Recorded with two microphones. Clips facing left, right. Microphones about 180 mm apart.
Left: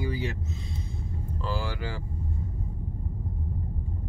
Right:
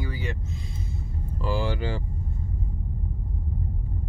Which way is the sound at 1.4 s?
15° right (ahead or behind).